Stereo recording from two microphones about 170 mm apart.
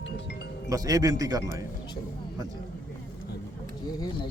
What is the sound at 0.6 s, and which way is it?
Speech, 20° right (ahead or behind).